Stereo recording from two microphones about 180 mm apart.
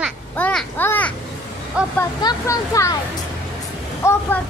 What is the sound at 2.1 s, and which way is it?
Speech, 20° left (ahead or behind).